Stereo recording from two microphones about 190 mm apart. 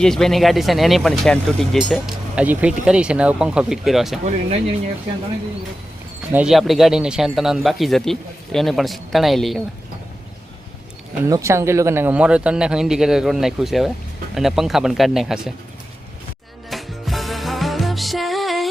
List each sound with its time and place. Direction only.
0.0 s speech: centre (ahead or behind)
4.3 s speech: 35° right (ahead or behind)
6.3 s speech: 5° right (ahead or behind)
11.3 s speech: 15° right (ahead or behind)
16.6 s music: centre (ahead or behind)